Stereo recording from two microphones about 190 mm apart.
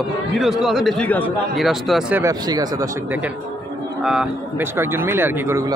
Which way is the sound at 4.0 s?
5° right (ahead or behind).